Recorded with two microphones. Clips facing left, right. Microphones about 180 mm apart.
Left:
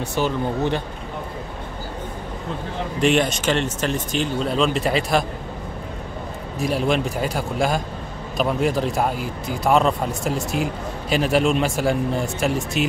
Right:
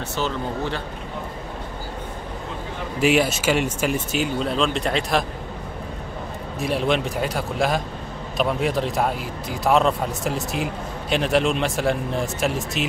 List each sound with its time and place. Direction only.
0.1 s speech: 15° left (ahead or behind)
3.0 s speech: 5° right (ahead or behind)
6.6 s speech: centre (ahead or behind)